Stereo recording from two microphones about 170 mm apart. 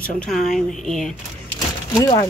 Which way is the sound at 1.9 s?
20° left (ahead or behind).